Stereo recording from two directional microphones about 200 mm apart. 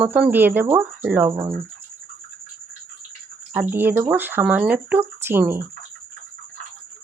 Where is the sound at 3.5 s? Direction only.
10° right (ahead or behind).